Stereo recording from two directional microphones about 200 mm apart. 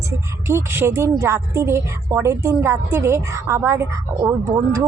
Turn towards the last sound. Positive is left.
turn(degrees=-15)  # may be behind; listen again after turning